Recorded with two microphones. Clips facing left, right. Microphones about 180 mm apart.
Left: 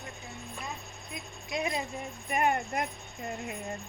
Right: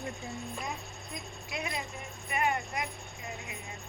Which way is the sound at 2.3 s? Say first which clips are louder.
Left 3 dB; 50° left (ahead or behind).